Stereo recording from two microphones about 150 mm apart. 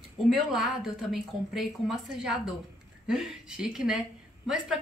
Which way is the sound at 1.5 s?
5° right (ahead or behind).